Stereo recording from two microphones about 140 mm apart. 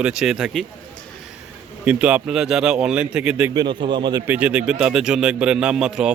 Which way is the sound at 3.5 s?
30° right (ahead or behind).